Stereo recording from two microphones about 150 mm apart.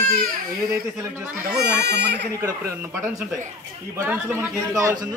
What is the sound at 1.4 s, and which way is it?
Speech, 90° right.